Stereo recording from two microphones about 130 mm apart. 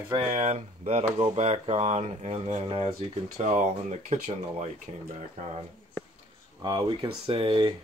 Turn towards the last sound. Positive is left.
turn(degrees=-40)  # may be behind; listen again after turning